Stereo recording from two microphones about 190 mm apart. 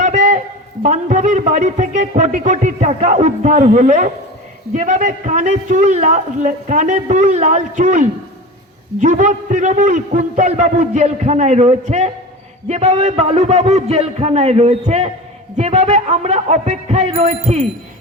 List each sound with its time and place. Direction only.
0.0 s a man's voice: 40° right (ahead or behind)